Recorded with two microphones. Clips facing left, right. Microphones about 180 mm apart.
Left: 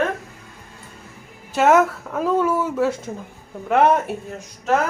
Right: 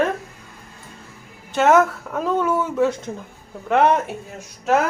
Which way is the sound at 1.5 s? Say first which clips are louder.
Even; 5° left (ahead or behind).